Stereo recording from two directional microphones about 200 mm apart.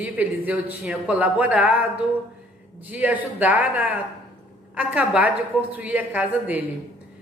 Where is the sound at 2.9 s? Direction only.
10° right (ahead or behind).